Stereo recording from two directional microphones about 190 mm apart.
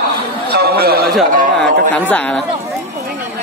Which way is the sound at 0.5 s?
55° right (ahead or behind).